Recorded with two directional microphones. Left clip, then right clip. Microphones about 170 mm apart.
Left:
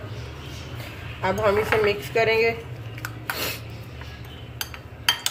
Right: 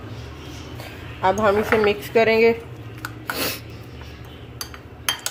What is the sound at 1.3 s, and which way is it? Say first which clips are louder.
A woman's voice: even; 45° right (ahead or behind).